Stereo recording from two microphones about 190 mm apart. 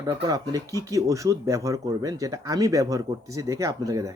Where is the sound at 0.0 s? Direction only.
20° right (ahead or behind).